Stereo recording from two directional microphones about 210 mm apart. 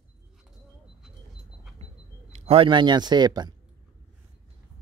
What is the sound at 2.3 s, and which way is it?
Speech, 25° right (ahead or behind).